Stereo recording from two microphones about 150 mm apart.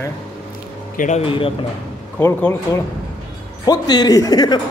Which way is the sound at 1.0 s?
55° left (ahead or behind).